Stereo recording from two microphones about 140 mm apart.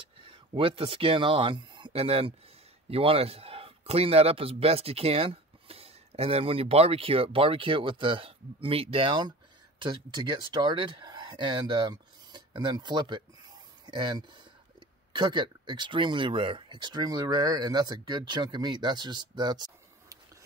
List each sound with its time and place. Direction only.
0.2 s a man's voice: 40° right (ahead or behind)